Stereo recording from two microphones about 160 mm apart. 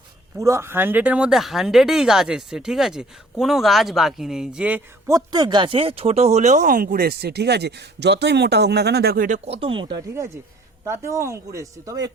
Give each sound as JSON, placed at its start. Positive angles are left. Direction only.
{"t": 0.3, "sound": "speech", "side_deg": -20}
{"t": 5.0, "sound": "speech", "side_deg": -25}
{"t": 9.5, "sound": "speech", "side_deg": -35}
{"t": 10.8, "sound": "speech", "side_deg": -15}